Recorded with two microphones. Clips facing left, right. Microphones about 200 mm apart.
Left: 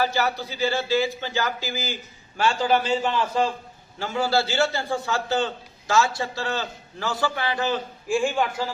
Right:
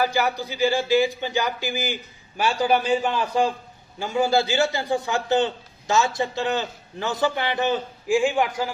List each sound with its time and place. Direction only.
0.0 s a man's voice: 15° right (ahead or behind)